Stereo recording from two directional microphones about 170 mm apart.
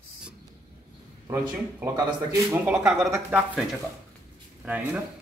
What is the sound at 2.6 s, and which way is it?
Speech, 5° right (ahead or behind).